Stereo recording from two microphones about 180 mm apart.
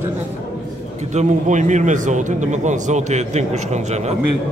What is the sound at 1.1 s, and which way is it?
A man's voice, 40° right (ahead or behind).